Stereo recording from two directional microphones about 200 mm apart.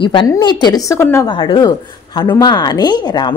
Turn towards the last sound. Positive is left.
turn(degrees=20)  # may be behind; listen again after turning